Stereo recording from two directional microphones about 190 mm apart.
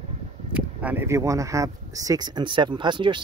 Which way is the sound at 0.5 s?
10° right (ahead or behind).